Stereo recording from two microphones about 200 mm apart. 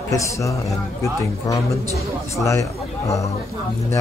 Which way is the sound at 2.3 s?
15° left (ahead or behind).